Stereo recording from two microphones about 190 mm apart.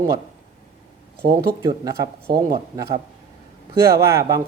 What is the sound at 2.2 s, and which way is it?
Speech, 55° right (ahead or behind).